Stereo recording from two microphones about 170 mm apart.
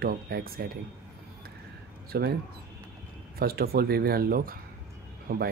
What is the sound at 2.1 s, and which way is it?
Speech, 70° right (ahead or behind).